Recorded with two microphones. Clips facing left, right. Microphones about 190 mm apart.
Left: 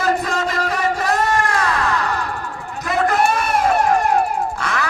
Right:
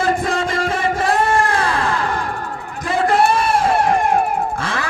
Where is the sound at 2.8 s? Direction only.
30° right (ahead or behind).